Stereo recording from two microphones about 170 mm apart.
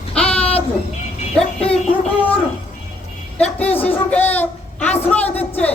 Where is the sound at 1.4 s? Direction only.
5° left (ahead or behind).